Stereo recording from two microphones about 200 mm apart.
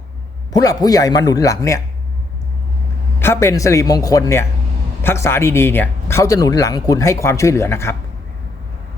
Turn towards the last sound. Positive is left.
turn(degrees=15)  # may be behind; listen again after turning